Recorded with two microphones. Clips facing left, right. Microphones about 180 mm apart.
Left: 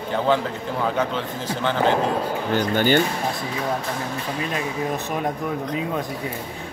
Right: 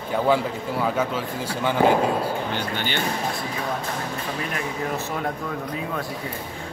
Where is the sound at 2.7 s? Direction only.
45° left (ahead or behind).